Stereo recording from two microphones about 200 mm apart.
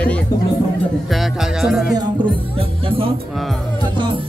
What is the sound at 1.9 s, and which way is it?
Speech, 25° right (ahead or behind).